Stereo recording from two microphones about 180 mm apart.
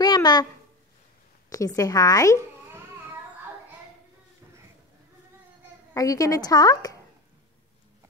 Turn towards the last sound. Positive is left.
turn(degrees=20)  # may be behind; listen again after turning